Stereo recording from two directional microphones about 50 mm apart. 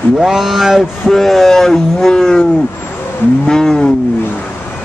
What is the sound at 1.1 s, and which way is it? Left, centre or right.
Speech, centre.